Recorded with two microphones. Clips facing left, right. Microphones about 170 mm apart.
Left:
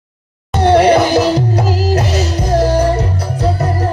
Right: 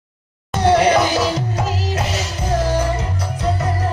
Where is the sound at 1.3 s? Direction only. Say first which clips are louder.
Left 7 dB; 35° left (ahead or behind).